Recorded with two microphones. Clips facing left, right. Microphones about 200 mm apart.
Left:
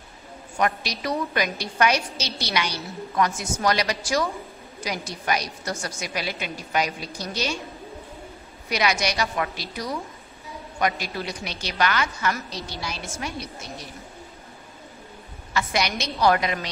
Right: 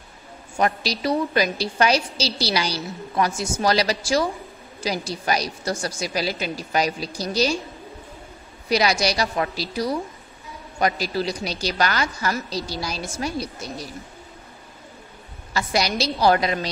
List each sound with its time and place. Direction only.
0.6 s a woman's voice: 30° right (ahead or behind)
8.6 s a woman's voice: 35° right (ahead or behind)
15.5 s a woman's voice: 35° right (ahead or behind)